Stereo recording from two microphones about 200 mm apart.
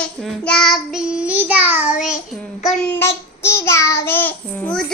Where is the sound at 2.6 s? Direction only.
Centre (ahead or behind).